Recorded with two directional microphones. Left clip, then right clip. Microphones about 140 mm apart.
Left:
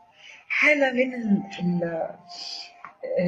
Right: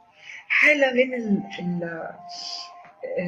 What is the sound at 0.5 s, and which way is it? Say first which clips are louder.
Speech: right 2 dB; 20° right (ahead or behind).